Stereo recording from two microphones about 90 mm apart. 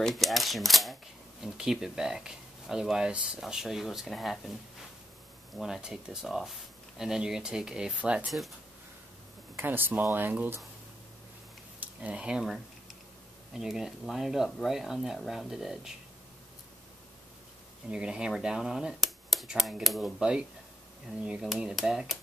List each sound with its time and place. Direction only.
0.0 s speech: centre (ahead or behind)
5.6 s speech: 5° right (ahead or behind)
9.6 s speech: 25° right (ahead or behind)
11.8 s speech: 15° right (ahead or behind)
17.8 s speech: 10° right (ahead or behind)